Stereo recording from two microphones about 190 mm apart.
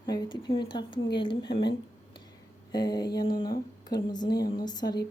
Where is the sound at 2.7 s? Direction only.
20° left (ahead or behind).